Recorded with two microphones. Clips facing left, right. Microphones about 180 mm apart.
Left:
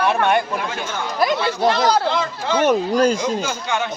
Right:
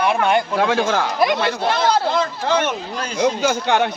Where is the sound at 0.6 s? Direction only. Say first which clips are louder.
Right 8 dB; 90° right.